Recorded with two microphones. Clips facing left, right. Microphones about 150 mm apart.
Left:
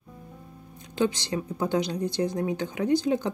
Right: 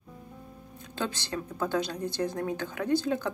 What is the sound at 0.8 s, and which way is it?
A woman's voice, 15° left (ahead or behind).